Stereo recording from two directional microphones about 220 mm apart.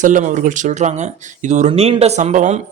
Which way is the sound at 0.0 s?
35° right (ahead or behind).